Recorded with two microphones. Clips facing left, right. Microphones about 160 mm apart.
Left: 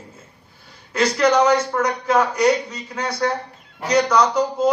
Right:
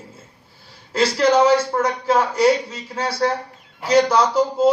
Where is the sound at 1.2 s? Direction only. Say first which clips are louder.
Right 1 dB; 30° right (ahead or behind).